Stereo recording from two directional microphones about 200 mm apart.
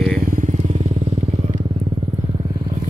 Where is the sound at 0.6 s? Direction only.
35° right (ahead or behind).